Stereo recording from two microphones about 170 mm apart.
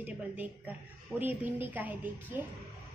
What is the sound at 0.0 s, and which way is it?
A woman's voice, 10° right (ahead or behind).